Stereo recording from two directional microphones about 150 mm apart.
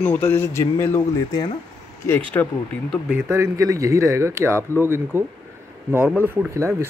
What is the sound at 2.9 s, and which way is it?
Speech, 10° right (ahead or behind).